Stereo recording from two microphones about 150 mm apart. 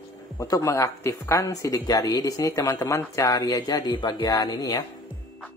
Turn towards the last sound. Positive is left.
turn(degrees=25)  # may be behind; listen again after turning